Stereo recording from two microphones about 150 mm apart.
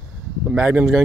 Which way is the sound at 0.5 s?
10° right (ahead or behind).